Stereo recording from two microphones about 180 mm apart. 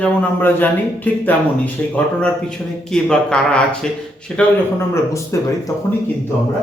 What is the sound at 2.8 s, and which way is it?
A man's voice, 5° left (ahead or behind).